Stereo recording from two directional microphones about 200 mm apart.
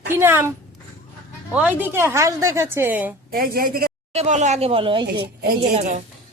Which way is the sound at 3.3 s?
50° right (ahead or behind).